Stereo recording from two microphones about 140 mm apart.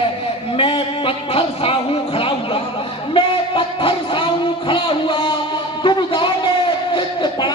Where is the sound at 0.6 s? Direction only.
40° left (ahead or behind).